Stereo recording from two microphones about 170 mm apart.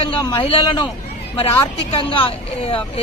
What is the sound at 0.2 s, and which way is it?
Speech, 20° left (ahead or behind).